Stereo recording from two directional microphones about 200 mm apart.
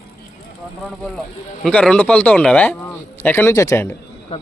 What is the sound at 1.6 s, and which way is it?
Speech, 5° left (ahead or behind).